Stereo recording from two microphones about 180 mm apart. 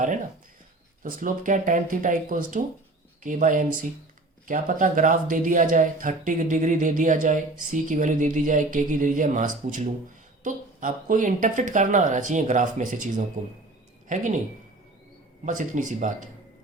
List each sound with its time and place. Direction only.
1.0 s speech: 45° right (ahead or behind)
15.4 s speech: 45° right (ahead or behind)